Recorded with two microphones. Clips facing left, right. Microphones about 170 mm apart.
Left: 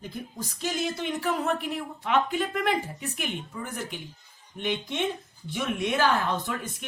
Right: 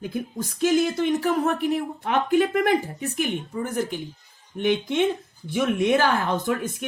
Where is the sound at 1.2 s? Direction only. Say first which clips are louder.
Right 5 dB; 45° right (ahead or behind).